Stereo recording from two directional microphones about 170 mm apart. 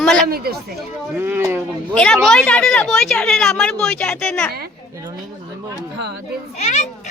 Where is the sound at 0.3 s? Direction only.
65° right (ahead or behind).